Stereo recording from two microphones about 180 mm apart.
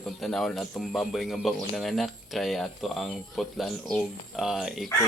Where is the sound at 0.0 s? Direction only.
5° left (ahead or behind).